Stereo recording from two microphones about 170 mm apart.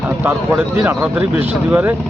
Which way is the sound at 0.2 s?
10° right (ahead or behind).